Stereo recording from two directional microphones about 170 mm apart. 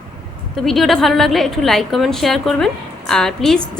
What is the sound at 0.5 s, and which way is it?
A woman's voice, centre (ahead or behind).